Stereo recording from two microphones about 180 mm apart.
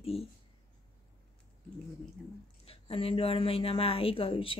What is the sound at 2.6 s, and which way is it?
Speech, 30° left (ahead or behind).